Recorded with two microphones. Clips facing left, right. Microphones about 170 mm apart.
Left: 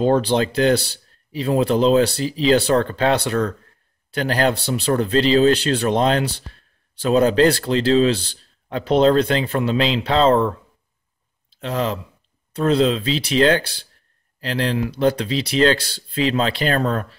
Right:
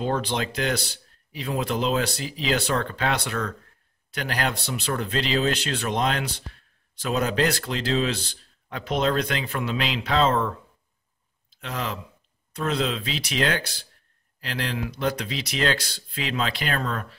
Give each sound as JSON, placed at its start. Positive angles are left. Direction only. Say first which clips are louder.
{"t": 0.0, "sound": "speech", "louder": "left 9 dB", "side_deg": 35}
{"t": 11.5, "sound": "speech", "louder": "left 8 dB", "side_deg": 30}